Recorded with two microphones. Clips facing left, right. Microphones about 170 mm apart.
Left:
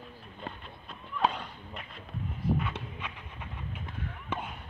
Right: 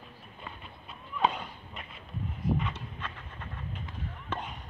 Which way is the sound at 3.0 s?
10° left (ahead or behind).